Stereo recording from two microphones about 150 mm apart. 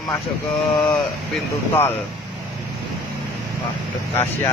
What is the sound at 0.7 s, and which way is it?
Speech, 5° left (ahead or behind).